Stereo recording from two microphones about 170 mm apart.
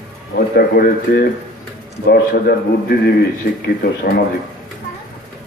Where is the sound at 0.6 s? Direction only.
65° left (ahead or behind).